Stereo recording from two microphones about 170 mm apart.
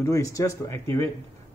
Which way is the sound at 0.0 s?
20° left (ahead or behind).